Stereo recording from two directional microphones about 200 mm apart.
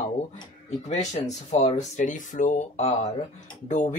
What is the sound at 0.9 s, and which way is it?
Speech, 35° left (ahead or behind).